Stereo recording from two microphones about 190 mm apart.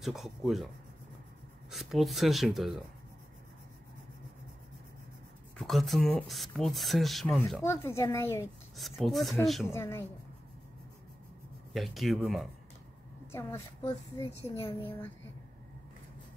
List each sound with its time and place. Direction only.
0.0 s speech: centre (ahead or behind)
1.7 s speech: centre (ahead or behind)
5.6 s speech: centre (ahead or behind)
7.6 s speech: 15° left (ahead or behind)
8.7 s speech: centre (ahead or behind)
9.7 s speech: 15° left (ahead or behind)
11.7 s speech: centre (ahead or behind)
13.3 s speech: 15° left (ahead or behind)
14.4 s a woman's voice: 30° left (ahead or behind)